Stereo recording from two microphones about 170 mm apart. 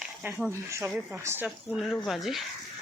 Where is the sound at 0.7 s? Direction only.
15° right (ahead or behind).